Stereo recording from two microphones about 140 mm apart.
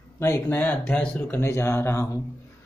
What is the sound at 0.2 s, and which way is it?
Speech, 20° left (ahead or behind).